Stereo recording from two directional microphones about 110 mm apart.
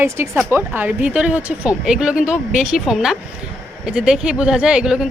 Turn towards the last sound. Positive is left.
turn(degrees=-5)  # may be behind; listen again after turning